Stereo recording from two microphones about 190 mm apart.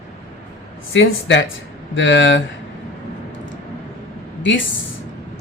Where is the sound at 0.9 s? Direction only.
75° left (ahead or behind).